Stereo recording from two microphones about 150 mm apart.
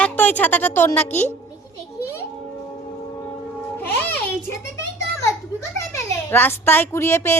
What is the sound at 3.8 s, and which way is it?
Music, 10° left (ahead or behind).